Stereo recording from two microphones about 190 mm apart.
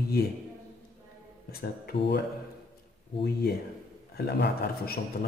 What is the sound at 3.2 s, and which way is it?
A man's voice, 55° left (ahead or behind).